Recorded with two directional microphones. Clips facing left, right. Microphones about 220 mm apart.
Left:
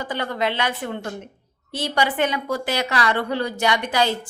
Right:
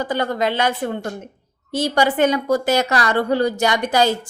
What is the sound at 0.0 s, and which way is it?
A woman's voice, 40° right (ahead or behind).